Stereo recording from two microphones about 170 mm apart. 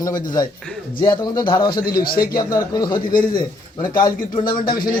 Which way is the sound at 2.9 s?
55° left (ahead or behind).